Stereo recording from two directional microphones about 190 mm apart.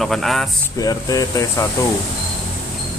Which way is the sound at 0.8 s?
20° left (ahead or behind).